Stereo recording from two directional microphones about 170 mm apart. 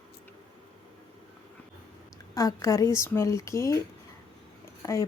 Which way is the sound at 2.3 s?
20° left (ahead or behind).